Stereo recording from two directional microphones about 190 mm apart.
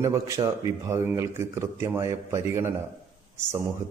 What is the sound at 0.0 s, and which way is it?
A man's voice, 15° right (ahead or behind).